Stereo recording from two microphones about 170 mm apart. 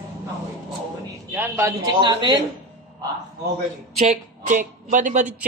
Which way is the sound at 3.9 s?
45° right (ahead or behind).